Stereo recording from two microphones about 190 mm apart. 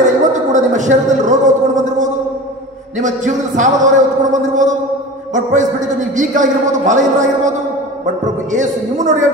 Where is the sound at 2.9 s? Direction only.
40° right (ahead or behind).